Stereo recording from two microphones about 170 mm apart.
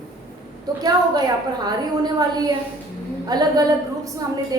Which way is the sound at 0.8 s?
25° right (ahead or behind).